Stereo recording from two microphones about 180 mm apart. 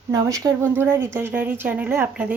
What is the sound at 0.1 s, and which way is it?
Speech, 20° right (ahead or behind).